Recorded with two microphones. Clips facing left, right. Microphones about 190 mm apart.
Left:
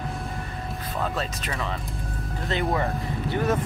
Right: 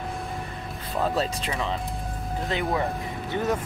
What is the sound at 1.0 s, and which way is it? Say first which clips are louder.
Speech: right 5 dB; 30° right (ahead or behind).